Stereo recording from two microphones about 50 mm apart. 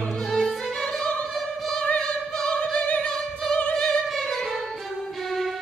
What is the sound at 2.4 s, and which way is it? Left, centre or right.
Opera, left.